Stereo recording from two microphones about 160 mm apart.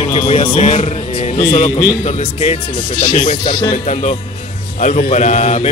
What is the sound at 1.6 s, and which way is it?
Speech, 20° left (ahead or behind).